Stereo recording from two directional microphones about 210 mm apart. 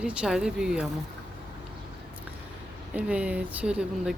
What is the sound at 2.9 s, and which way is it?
Speech, 5° right (ahead or behind).